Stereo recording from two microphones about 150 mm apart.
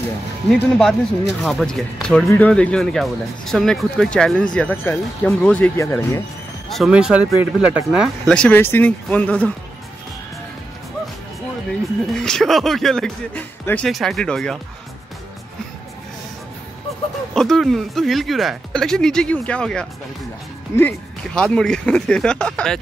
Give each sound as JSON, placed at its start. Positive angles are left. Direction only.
{"t": 0.5, "sound": "speech", "side_deg": 0}
{"t": 6.7, "sound": "speech", "side_deg": -5}
{"t": 8.3, "sound": "speech", "side_deg": 10}
{"t": 12.1, "sound": "speech", "side_deg": 5}
{"t": 17.3, "sound": "speech", "side_deg": 0}
{"t": 20.7, "sound": "speech", "side_deg": 20}
{"t": 21.4, "sound": "speech", "side_deg": 5}